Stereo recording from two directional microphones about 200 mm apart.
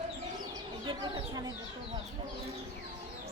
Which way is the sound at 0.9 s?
20° right (ahead or behind).